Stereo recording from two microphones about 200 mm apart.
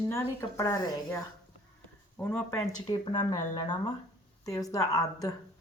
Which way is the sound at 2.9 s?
20° left (ahead or behind).